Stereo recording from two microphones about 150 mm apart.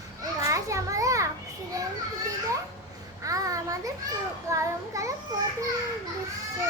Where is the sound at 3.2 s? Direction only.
20° right (ahead or behind).